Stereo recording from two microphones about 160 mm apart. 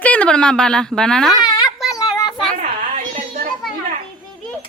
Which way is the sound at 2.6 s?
55° right (ahead or behind).